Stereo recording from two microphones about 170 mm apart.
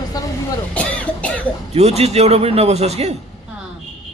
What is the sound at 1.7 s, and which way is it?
A man's voice, 40° right (ahead or behind).